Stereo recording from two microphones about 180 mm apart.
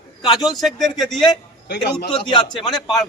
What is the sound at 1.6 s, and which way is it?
Speech, 70° left (ahead or behind).